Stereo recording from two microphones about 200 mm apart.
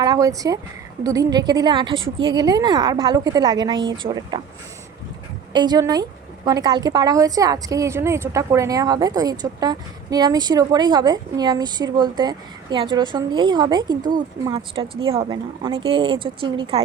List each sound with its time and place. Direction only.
0.0 s a woman's voice: 15° right (ahead or behind)
5.5 s a woman's voice: 20° right (ahead or behind)